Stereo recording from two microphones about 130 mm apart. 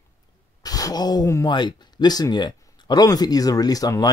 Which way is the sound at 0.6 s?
30° left (ahead or behind).